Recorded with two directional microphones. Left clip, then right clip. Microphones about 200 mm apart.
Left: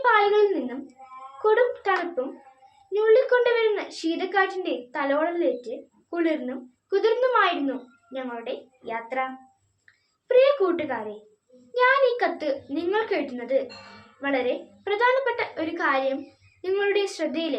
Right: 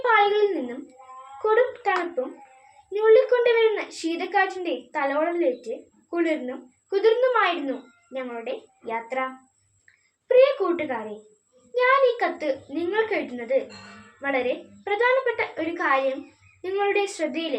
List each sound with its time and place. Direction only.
0.0 s a sound: 10° left (ahead or behind)
2.9 s a woman's voice: 10° left (ahead or behind)
10.2 s a woman's voice: 10° left (ahead or behind)